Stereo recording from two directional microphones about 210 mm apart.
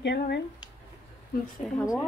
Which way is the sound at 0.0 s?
50° left (ahead or behind).